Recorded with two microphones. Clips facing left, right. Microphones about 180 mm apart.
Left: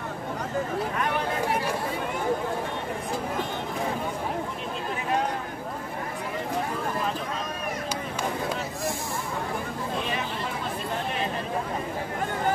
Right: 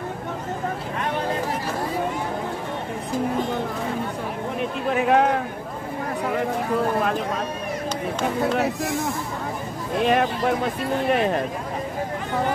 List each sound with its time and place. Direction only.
4.6 s a sound: 70° right (ahead or behind)
8.5 s speech: 70° right (ahead or behind)
9.9 s speech: 65° right (ahead or behind)